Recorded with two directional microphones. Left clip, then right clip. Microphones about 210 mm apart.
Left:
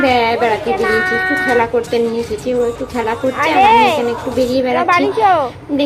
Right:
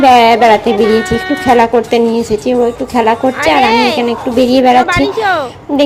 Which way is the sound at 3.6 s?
10° right (ahead or behind).